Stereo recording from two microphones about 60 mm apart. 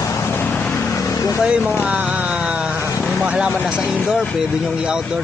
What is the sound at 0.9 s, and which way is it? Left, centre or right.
Vehicle, left.